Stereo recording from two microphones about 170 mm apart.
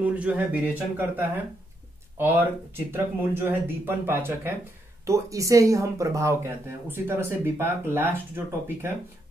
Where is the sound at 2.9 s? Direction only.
10° right (ahead or behind).